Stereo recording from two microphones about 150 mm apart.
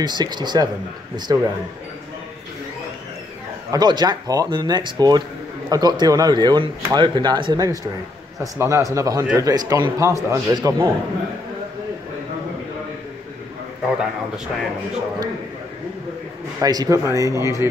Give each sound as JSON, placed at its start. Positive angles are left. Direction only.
{"t": 0.0, "sound": "speech", "side_deg": -30}
{"t": 3.7, "sound": "speech", "side_deg": -30}
{"t": 13.8, "sound": "a man's voice", "side_deg": -5}
{"t": 16.6, "sound": "speech", "side_deg": -25}